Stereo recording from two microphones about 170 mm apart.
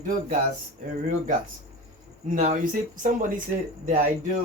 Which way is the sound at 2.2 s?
45° right (ahead or behind).